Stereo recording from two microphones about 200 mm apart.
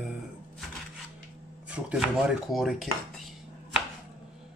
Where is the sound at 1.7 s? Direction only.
5° right (ahead or behind).